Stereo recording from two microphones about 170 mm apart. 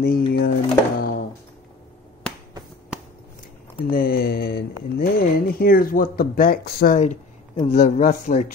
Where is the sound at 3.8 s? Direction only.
60° left (ahead or behind).